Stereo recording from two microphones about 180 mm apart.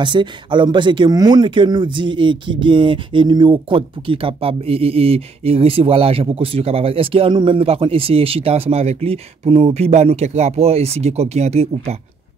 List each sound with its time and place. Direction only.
0.0 s speech: 25° right (ahead or behind)